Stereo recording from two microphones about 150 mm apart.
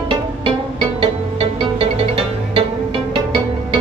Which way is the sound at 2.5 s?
35° right (ahead or behind).